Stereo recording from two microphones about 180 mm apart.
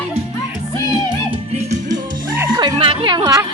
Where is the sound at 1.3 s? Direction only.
40° right (ahead or behind).